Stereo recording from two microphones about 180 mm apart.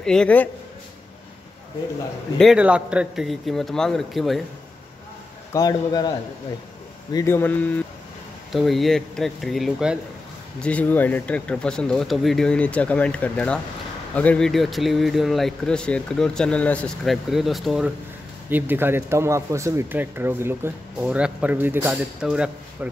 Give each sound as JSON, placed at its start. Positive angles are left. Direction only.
{"t": 0.0, "sound": "speech", "side_deg": 5}
{"t": 2.3, "sound": "speech", "side_deg": 0}
{"t": 5.5, "sound": "speech", "side_deg": 20}